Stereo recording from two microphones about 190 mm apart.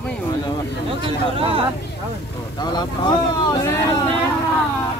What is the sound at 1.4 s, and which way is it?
Speech, 30° right (ahead or behind).